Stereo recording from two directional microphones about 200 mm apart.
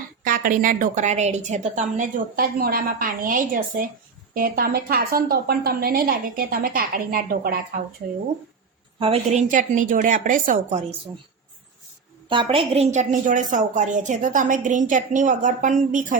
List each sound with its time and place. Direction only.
0.3 s a woman's voice: 45° right (ahead or behind)
9.0 s a woman's voice: 30° right (ahead or behind)
12.3 s a woman's voice: 25° right (ahead or behind); by 16.1 s 40° right (ahead or behind)